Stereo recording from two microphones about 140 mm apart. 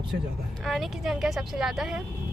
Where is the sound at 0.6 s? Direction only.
Centre (ahead or behind).